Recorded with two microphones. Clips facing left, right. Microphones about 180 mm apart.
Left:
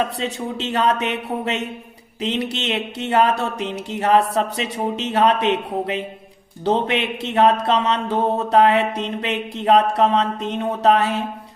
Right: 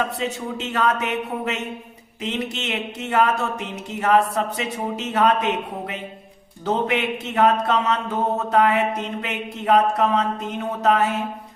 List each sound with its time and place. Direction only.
0.2 s speech: 30° left (ahead or behind)
2.2 s a sound: 30° left (ahead or behind)
9.6 s speech: 30° left (ahead or behind)